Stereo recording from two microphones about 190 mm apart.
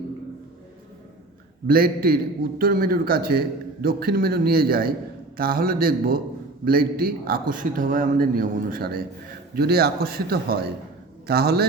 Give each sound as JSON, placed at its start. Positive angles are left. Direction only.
{"t": 1.6, "sound": "a man's voice", "side_deg": -50}